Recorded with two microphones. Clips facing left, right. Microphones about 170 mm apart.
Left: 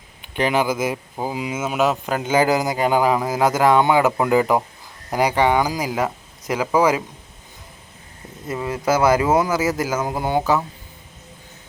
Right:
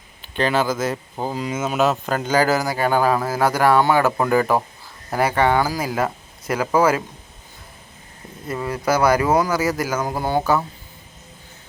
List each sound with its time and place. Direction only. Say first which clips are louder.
0.3 s speech: even; 15° left (ahead or behind)
8.4 s speech: left 1 dB; 20° left (ahead or behind)